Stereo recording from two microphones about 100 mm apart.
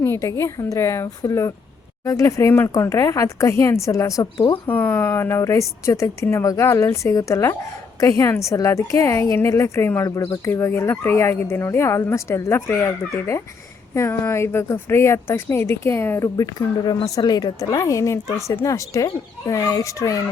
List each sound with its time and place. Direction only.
0.0 s a woman's voice: 25° left (ahead or behind)
4.5 s a woman's voice: 20° left (ahead or behind)